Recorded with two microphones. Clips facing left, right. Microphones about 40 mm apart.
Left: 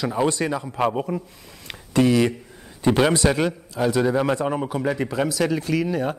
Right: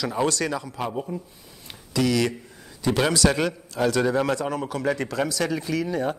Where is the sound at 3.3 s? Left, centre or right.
Centre.